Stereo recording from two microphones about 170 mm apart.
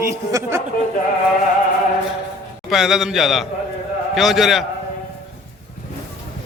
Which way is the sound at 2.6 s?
Centre (ahead or behind).